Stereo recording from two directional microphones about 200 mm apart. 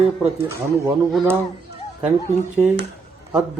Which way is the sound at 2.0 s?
10° right (ahead or behind).